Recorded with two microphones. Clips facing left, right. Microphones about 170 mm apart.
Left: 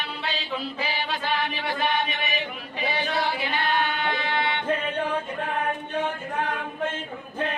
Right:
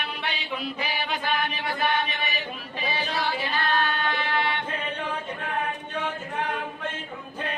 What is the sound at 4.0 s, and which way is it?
Music, 20° left (ahead or behind).